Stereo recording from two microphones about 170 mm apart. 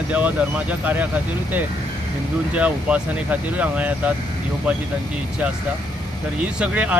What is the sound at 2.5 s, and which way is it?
Speech, 10° right (ahead or behind).